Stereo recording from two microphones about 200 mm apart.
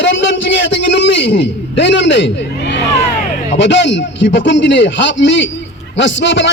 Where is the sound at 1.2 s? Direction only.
55° left (ahead or behind).